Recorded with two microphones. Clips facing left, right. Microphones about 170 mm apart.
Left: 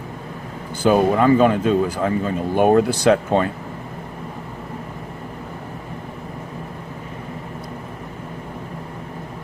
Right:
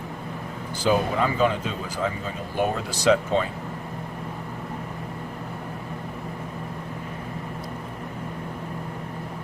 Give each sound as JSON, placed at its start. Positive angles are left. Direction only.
{"t": 0.8, "sound": "speech", "side_deg": 55}